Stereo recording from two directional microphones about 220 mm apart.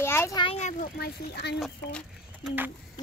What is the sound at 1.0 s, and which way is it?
Speech, 50° left (ahead or behind).